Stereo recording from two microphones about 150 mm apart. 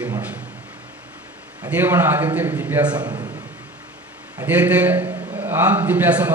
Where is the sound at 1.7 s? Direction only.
15° right (ahead or behind).